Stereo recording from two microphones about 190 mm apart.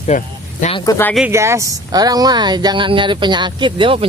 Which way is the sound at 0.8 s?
20° left (ahead or behind).